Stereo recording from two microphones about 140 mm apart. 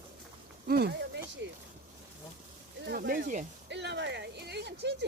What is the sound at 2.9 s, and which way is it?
Speech, 85° right.